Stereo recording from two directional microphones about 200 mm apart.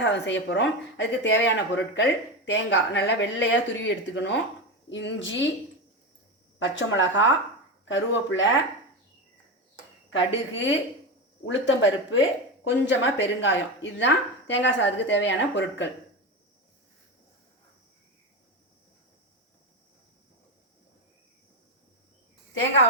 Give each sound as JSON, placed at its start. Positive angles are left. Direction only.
{"t": 0.0, "sound": "speech", "side_deg": 65}
{"t": 6.6, "sound": "speech", "side_deg": 70}
{"t": 10.1, "sound": "speech", "side_deg": 70}